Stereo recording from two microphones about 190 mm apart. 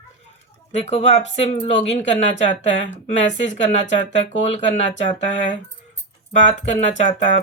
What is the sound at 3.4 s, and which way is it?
Speech, 35° left (ahead or behind).